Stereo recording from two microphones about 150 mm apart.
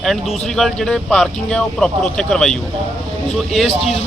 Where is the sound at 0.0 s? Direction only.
Centre (ahead or behind).